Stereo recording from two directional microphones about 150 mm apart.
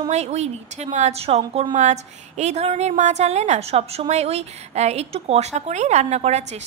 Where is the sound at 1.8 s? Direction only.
50° right (ahead or behind).